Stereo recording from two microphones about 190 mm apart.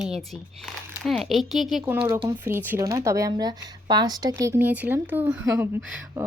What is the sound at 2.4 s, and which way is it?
Speech, 10° right (ahead or behind).